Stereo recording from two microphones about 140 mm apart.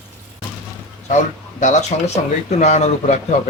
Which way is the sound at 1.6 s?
55° left (ahead or behind).